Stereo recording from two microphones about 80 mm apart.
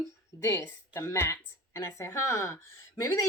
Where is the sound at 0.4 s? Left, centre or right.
Left.